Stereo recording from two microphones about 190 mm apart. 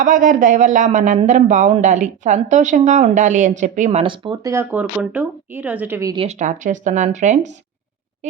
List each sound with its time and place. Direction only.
0.0 s speech: 45° right (ahead or behind); by 6.1 s 15° right (ahead or behind)
6.1 s speech: 40° right (ahead or behind)